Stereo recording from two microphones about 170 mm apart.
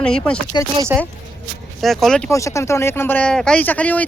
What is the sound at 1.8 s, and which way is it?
Speech, centre (ahead or behind).